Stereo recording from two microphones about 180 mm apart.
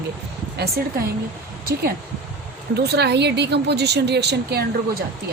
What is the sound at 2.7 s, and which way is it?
Speech, 65° right (ahead or behind).